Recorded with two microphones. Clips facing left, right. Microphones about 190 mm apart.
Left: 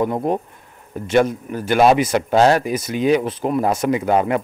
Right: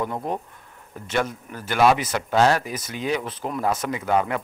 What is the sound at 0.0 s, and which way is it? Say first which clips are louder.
Speech: left 7 dB; 20° left (ahead or behind).